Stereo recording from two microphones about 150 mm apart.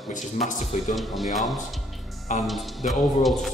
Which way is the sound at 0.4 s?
55° left (ahead or behind).